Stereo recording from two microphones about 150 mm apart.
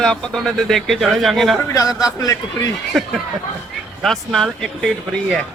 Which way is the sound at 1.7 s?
20° left (ahead or behind).